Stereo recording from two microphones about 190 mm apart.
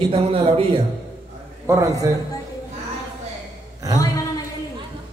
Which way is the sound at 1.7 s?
15° right (ahead or behind).